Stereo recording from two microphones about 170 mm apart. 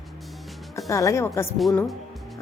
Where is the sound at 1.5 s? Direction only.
Centre (ahead or behind).